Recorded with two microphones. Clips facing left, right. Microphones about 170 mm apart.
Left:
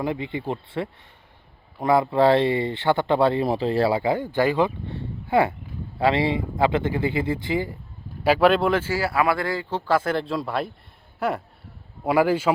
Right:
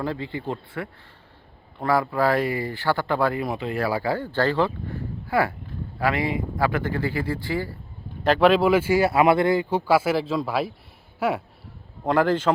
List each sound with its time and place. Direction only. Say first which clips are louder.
0.0 s speech: left 2 dB; 20° left (ahead or behind)
8.2 s speech: even; 5° left (ahead or behind)
12.0 s a man's voice: left 1 dB; 10° left (ahead or behind)